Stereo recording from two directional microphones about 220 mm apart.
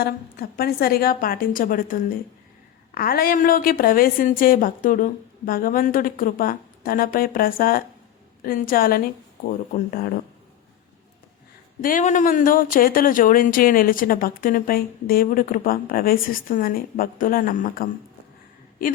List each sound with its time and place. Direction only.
0.0 s speech: 45° left (ahead or behind)
11.8 s speech: 40° left (ahead or behind)